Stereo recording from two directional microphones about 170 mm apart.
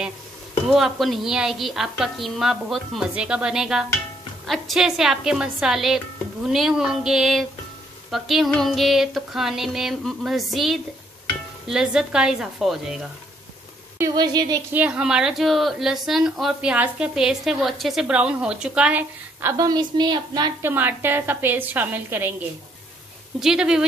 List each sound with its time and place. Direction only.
0.7 s a woman's voice: centre (ahead or behind)
13.9 s a woman's voice: 20° right (ahead or behind)
14.7 s a woman's voice: 5° right (ahead or behind)
19.6 s a woman's voice: 25° right (ahead or behind)
20.6 s a woman's voice: 10° right (ahead or behind)
23.4 s a woman's voice: 5° right (ahead or behind)